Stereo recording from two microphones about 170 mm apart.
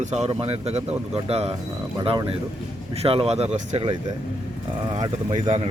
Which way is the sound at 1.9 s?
30° right (ahead or behind).